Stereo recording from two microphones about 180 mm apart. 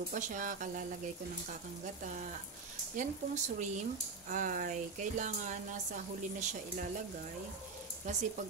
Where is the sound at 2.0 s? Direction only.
45° right (ahead or behind).